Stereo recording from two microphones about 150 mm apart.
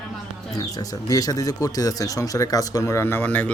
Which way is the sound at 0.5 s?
25° left (ahead or behind).